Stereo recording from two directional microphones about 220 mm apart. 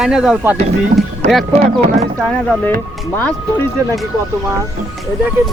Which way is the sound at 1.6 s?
25° right (ahead or behind).